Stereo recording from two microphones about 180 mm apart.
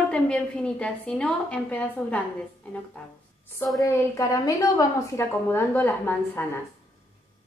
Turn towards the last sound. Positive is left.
turn(degrees=10)  # may be behind; listen again after turning